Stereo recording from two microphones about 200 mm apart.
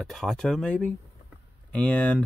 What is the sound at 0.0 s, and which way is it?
Speech, centre (ahead or behind).